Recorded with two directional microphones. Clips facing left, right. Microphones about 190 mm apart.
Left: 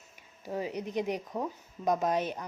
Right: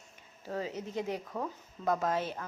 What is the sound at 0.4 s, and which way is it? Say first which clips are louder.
A woman's voice: left 2 dB; 15° left (ahead or behind).